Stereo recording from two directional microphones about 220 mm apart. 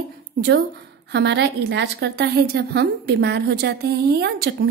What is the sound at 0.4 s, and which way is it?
A woman's voice, 45° right (ahead or behind).